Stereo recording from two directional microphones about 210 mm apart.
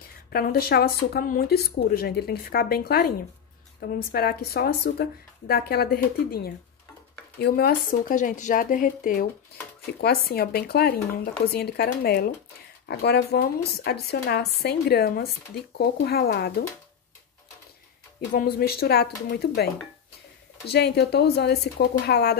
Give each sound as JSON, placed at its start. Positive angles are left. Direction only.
{"t": 0.3, "sound": "speech", "side_deg": 45}
{"t": 18.3, "sound": "speech", "side_deg": 45}